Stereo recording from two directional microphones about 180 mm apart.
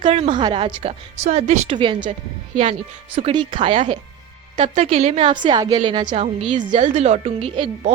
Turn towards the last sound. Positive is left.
turn(degrees=-30)  # may be behind; listen again after turning